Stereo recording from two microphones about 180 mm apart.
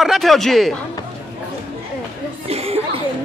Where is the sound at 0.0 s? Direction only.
Centre (ahead or behind).